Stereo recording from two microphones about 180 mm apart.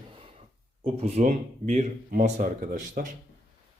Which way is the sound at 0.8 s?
35° right (ahead or behind).